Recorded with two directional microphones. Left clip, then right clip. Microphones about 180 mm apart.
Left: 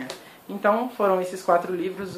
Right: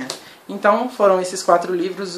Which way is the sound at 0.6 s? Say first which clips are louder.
Right 6 dB; 15° right (ahead or behind).